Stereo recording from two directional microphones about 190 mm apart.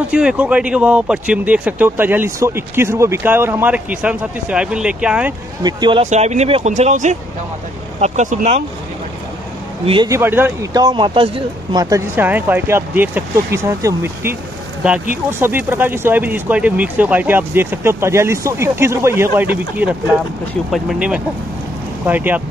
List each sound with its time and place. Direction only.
0.1 s speech: 5° right (ahead or behind)
5.6 s speech: 20° right (ahead or behind)
6.0 s speech: 35° right (ahead or behind)
10.0 s speech: 15° right (ahead or behind)